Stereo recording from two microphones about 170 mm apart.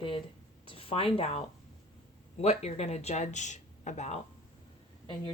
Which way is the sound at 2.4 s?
40° left (ahead or behind).